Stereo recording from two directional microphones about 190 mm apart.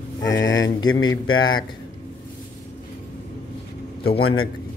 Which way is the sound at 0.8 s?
90° left.